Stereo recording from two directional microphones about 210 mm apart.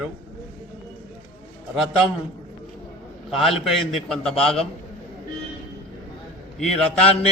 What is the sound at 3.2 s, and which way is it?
A man's voice, centre (ahead or behind).